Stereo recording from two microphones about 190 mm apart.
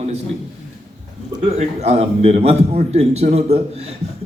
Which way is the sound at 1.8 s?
35° right (ahead or behind).